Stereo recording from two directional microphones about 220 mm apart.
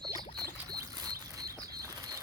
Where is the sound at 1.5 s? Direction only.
15° right (ahead or behind).